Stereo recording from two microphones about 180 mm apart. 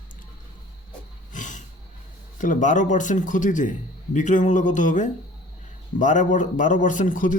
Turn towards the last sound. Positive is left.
turn(degrees=45)  # may be behind; listen again after turning